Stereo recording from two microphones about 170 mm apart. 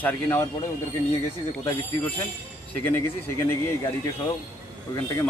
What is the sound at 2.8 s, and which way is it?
Speech, 15° left (ahead or behind).